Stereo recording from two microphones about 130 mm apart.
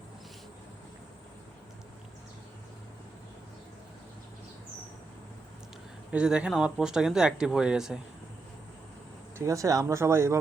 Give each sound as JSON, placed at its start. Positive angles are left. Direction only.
{"t": 6.1, "sound": "speech", "side_deg": -10}
{"t": 9.4, "sound": "speech", "side_deg": -25}